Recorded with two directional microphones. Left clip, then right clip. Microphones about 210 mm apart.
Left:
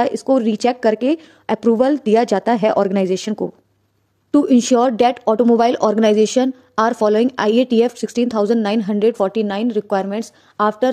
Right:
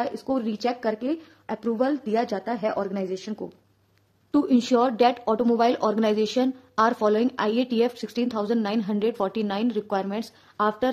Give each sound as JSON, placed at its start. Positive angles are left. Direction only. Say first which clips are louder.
{"t": 0.0, "sound": "a woman's voice", "louder": "left 11 dB", "side_deg": 35}
{"t": 4.3, "sound": "speech", "louder": "left 8 dB", "side_deg": 30}